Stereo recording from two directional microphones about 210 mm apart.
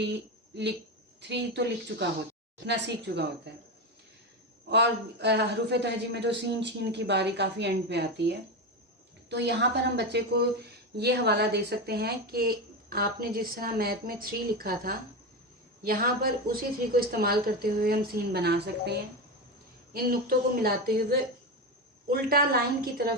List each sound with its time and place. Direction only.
0.0 s a woman's voice: 55° right (ahead or behind)
4.7 s a woman's voice: 55° right (ahead or behind)